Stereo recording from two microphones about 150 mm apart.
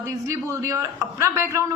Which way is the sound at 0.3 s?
20° right (ahead or behind).